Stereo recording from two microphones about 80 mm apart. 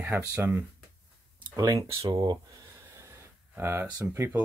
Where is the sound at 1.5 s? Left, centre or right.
Right.